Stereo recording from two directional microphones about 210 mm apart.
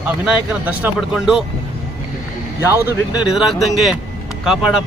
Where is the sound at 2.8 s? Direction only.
20° left (ahead or behind).